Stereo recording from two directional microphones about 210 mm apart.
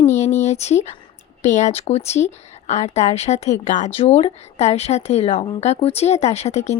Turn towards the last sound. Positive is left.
turn(degrees=30)  # may be behind; listen again after turning